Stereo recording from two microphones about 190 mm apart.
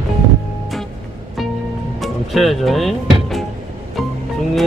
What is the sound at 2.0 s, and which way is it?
Music, centre (ahead or behind).